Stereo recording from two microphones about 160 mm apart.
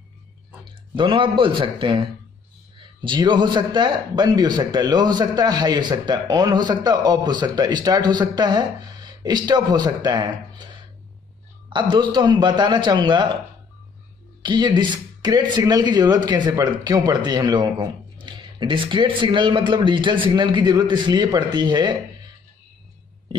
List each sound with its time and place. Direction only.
0.7 s speech: 30° right (ahead or behind)
14.4 s speech: 30° right (ahead or behind)